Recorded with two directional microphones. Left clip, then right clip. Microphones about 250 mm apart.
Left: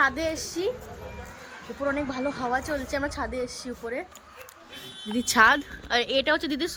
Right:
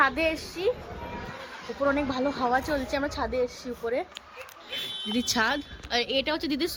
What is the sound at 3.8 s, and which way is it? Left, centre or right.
Speech, centre.